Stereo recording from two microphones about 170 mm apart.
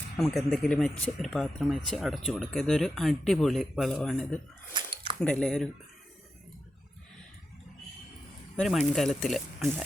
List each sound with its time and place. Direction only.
0.2 s speech: centre (ahead or behind)
4.7 s a sound: 25° right (ahead or behind)
5.2 s speech: 5° left (ahead or behind)
8.5 s speech: centre (ahead or behind)